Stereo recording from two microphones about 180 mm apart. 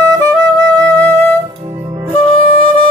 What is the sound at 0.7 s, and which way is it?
Music, 5° left (ahead or behind).